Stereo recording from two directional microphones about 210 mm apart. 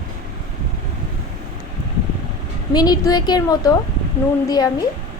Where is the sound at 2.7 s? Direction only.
20° left (ahead or behind).